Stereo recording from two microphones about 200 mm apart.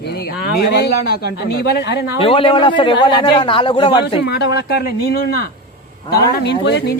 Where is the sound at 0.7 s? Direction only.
55° left (ahead or behind).